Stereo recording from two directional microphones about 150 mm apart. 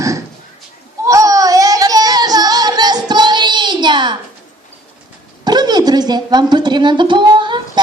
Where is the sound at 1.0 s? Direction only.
20° right (ahead or behind).